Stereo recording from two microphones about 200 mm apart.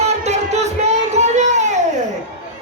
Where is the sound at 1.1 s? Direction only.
35° right (ahead or behind).